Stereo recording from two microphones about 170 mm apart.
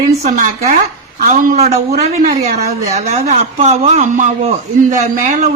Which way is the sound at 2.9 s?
40° right (ahead or behind).